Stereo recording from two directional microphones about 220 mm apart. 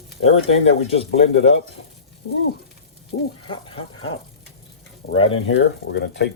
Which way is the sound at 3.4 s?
25° left (ahead or behind).